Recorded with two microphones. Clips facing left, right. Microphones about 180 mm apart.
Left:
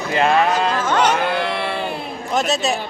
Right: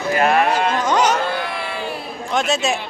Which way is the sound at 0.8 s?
10° right (ahead or behind).